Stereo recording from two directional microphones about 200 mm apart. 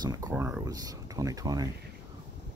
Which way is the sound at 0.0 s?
20° right (ahead or behind).